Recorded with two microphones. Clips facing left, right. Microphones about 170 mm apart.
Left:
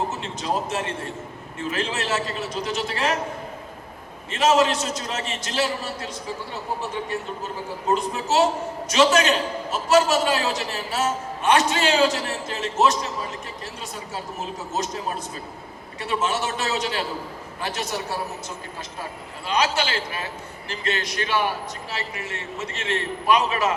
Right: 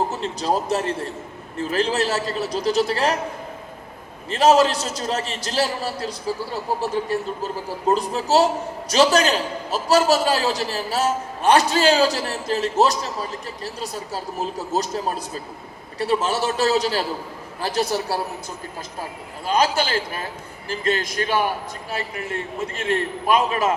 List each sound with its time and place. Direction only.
0.1 s a man's voice: 35° right (ahead or behind)
4.3 s a man's voice: 35° right (ahead or behind)
14.7 s a man's voice: 35° right (ahead or behind)
16.0 s a man's voice: 35° right (ahead or behind)
19.5 s a man's voice: 45° right (ahead or behind)